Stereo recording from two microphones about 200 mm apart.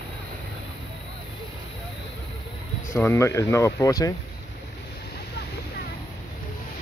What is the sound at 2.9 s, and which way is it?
Speech, 15° left (ahead or behind).